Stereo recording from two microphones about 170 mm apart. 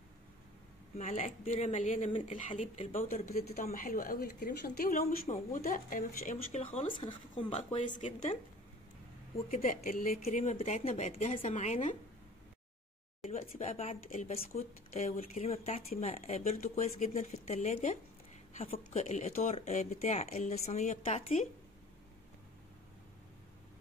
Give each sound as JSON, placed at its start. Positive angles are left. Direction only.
{"t": 0.9, "sound": "speech", "side_deg": 50}
{"t": 3.7, "sound": "speech", "side_deg": 55}
{"t": 6.3, "sound": "speech", "side_deg": 40}
{"t": 9.5, "sound": "speech", "side_deg": 50}
{"t": 13.2, "sound": "speech", "side_deg": 40}